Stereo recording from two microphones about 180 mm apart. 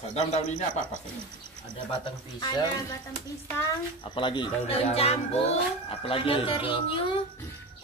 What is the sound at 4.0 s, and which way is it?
A child's voice, 25° left (ahead or behind).